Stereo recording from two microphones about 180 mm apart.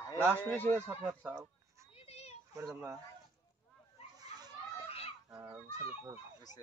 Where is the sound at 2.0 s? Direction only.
35° left (ahead or behind).